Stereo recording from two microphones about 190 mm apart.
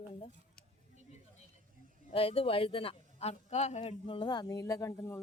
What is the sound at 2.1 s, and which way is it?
A man's voice, 30° left (ahead or behind).